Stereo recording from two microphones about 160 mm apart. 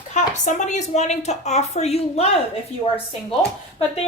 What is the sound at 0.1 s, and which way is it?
A woman's voice, 50° left (ahead or behind).